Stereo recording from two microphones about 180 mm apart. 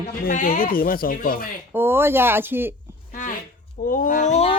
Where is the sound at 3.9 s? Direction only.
45° left (ahead or behind).